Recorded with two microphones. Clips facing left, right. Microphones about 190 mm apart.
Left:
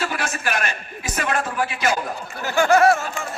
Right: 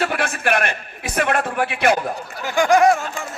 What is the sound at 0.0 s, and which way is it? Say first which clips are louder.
A man's voice: right 4 dB; 60° right (ahead or behind).